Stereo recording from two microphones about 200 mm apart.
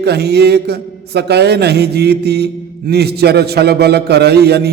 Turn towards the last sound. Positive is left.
turn(degrees=-55)  # may be behind; listen again after turning